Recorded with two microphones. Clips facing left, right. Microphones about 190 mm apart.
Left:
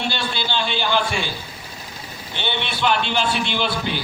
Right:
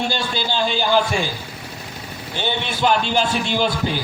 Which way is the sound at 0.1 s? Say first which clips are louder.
Right 2 dB; 40° right (ahead or behind).